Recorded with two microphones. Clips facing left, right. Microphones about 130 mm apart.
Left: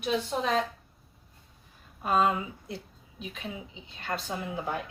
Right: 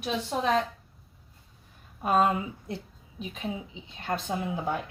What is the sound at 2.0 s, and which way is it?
Speech, 50° right (ahead or behind).